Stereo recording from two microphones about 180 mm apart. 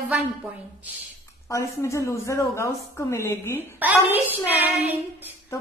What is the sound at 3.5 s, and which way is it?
Speech, 10° right (ahead or behind).